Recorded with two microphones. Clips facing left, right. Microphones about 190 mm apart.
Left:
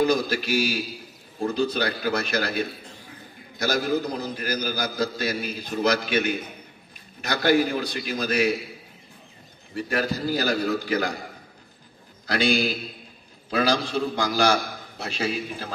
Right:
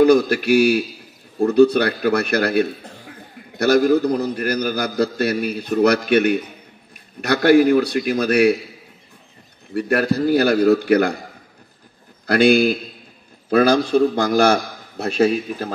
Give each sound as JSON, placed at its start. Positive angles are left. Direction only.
{"t": 0.0, "sound": "a man's voice", "side_deg": -60}
{"t": 9.8, "sound": "a man's voice", "side_deg": -60}
{"t": 12.3, "sound": "a man's voice", "side_deg": -55}